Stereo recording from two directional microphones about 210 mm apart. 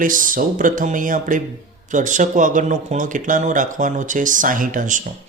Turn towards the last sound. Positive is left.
turn(degrees=-40)  # may be behind; listen again after turning